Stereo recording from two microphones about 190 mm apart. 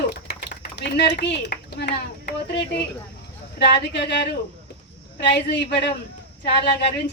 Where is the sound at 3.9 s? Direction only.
65° left (ahead or behind).